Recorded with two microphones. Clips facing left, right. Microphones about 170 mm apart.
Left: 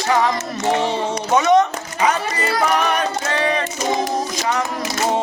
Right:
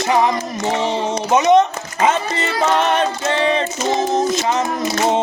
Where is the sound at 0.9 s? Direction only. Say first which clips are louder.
Right 2 dB; 20° right (ahead or behind).